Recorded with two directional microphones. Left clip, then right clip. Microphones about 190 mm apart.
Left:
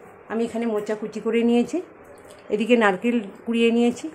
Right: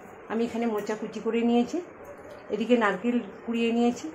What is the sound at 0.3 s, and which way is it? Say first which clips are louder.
A woman's voice: left 4 dB; 30° left (ahead or behind).